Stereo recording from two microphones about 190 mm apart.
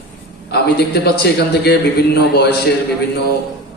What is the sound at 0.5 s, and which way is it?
A man's voice, 60° left (ahead or behind).